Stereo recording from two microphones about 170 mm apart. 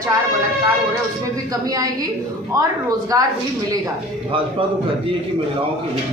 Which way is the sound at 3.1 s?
20° right (ahead or behind).